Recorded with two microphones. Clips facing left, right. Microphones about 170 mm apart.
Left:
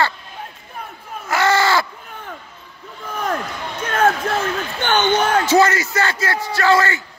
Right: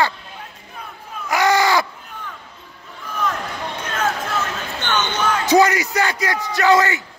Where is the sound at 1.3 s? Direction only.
15° right (ahead or behind).